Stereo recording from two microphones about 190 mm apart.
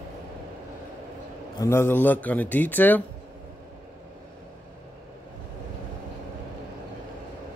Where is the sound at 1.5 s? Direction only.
15° left (ahead or behind).